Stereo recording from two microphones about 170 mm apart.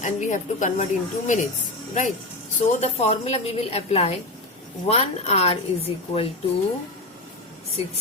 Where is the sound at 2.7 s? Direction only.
40° left (ahead or behind).